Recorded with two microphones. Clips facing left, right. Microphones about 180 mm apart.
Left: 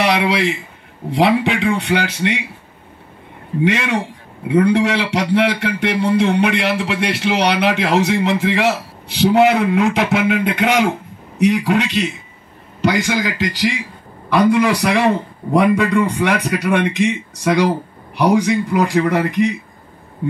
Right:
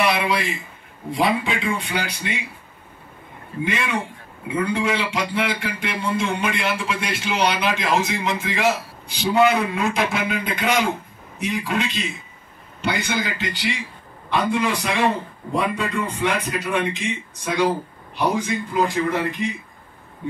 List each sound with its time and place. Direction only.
0.0 s a man's voice: 75° left (ahead or behind)
3.6 s a man's voice: 75° left (ahead or behind)
12.8 s a man's voice: 85° left; by 19.5 s 70° left (ahead or behind)